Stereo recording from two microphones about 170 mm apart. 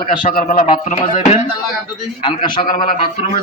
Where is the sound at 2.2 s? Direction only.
30° left (ahead or behind).